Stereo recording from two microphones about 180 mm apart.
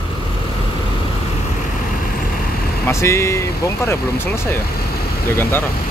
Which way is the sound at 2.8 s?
15° left (ahead or behind).